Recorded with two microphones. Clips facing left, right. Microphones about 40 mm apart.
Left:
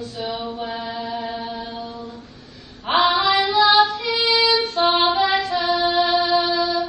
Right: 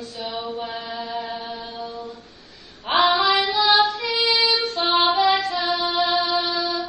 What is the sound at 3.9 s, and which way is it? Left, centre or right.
Female singing, left.